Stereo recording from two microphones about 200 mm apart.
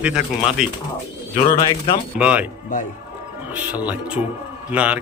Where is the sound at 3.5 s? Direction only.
10° right (ahead or behind).